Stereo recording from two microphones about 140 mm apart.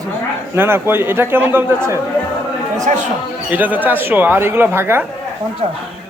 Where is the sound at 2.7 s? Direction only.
65° right (ahead or behind).